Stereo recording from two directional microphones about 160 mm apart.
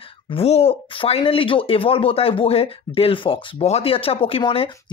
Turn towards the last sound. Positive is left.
turn(degrees=35)  # may be behind; listen again after turning